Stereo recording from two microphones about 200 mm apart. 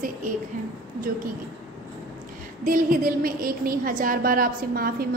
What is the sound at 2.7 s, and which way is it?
A woman's voice, 45° right (ahead or behind).